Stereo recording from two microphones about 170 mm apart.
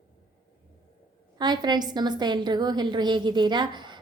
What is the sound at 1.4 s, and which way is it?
A woman's voice, 25° right (ahead or behind).